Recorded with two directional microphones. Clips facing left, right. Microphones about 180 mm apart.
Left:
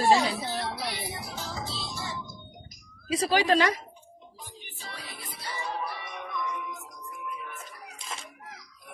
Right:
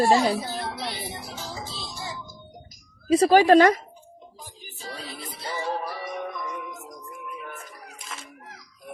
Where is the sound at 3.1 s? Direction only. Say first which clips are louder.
Right 8 dB; 45° right (ahead or behind).